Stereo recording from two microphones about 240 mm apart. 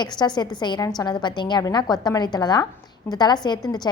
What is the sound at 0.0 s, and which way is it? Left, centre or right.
A woman's voice, centre.